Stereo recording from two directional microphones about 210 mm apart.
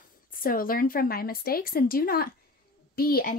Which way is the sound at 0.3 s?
40° left (ahead or behind).